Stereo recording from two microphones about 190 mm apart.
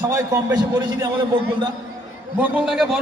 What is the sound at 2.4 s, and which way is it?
Speech, 5° right (ahead or behind).